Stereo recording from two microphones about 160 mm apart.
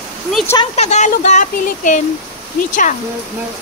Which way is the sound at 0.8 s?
45° left (ahead or behind).